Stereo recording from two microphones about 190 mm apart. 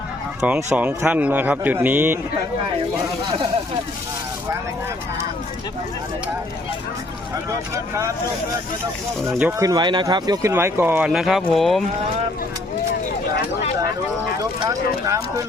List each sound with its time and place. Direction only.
0.4 s speech: 10° right (ahead or behind)
9.3 s speech: 15° right (ahead or behind)
14.6 s speech: 20° right (ahead or behind)